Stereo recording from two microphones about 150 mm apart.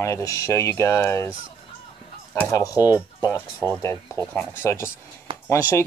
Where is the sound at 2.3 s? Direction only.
20° left (ahead or behind).